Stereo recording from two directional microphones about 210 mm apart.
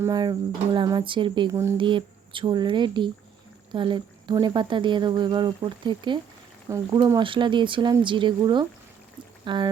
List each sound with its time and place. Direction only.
0.0 s speech: 20° right (ahead or behind)